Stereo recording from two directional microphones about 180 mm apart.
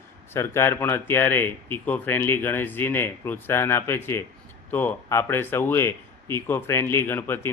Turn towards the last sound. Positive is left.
turn(degrees=15)  # may be behind; listen again after turning